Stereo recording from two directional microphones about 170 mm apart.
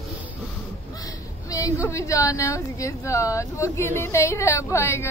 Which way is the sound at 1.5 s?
20° left (ahead or behind).